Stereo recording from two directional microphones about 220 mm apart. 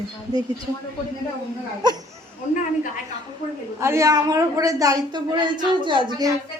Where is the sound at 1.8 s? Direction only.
20° right (ahead or behind).